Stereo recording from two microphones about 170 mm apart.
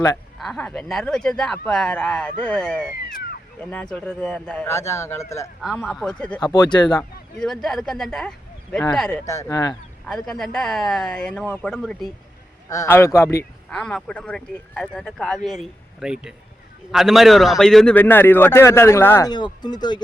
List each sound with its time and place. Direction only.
0.3 s a man's voice: centre (ahead or behind)
4.7 s a man's voice: 15° left (ahead or behind)
5.6 s speech: centre (ahead or behind)
6.4 s speech: 25° left (ahead or behind)
7.3 s speech: centre (ahead or behind)
9.2 s a man's voice: 15° left (ahead or behind)
10.1 s speech: centre (ahead or behind)
12.6 s a man's voice: 20° left (ahead or behind)
19.3 s speech: 25° left (ahead or behind)